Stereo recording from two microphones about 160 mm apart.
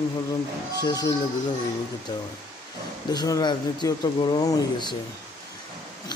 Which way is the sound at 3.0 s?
25° left (ahead or behind).